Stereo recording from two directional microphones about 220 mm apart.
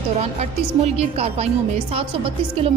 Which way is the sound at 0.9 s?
30° right (ahead or behind).